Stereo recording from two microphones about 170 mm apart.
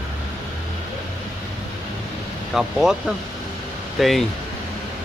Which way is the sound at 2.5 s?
5° right (ahead or behind).